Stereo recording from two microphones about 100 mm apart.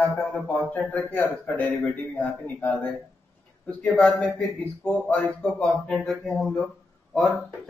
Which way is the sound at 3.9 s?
Centre (ahead or behind).